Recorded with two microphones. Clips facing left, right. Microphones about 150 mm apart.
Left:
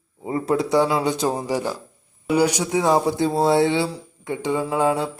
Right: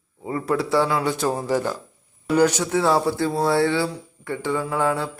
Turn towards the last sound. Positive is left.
turn(degrees=20)  # may be behind; listen again after turning